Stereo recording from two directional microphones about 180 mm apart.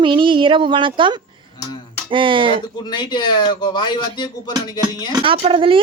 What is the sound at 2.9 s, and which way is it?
Speech, 25° left (ahead or behind).